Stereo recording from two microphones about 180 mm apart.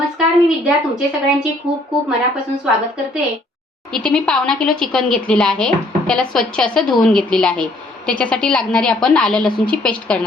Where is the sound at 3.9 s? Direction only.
5° left (ahead or behind).